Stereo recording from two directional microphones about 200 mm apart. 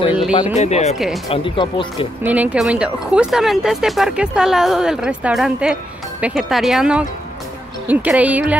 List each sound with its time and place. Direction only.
0.4 s speech: 35° left (ahead or behind)
0.9 s speech: centre (ahead or behind)
1.3 s speech: 25° left (ahead or behind)
2.2 s speech: 10° right (ahead or behind)